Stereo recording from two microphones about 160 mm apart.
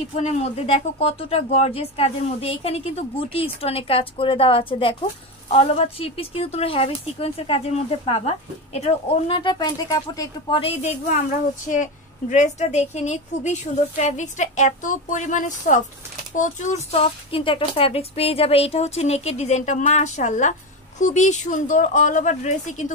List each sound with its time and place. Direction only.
0.1 s a woman's voice: 40° left (ahead or behind)
9.4 s speech: 25° left (ahead or behind)
10.6 s speech: 40° left (ahead or behind)
11.7 s a woman's voice: 50° left (ahead or behind)